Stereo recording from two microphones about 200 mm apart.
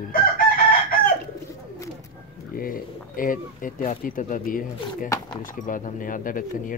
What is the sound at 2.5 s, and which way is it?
Speech, 45° left (ahead or behind).